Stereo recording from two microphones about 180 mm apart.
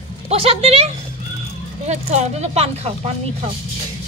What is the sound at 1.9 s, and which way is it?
Speech, 40° right (ahead or behind).